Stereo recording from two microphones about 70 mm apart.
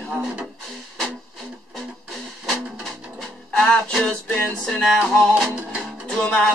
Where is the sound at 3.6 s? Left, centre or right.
Centre.